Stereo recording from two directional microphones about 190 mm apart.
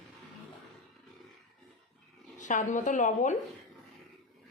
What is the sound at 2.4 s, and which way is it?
Speech, 40° left (ahead or behind).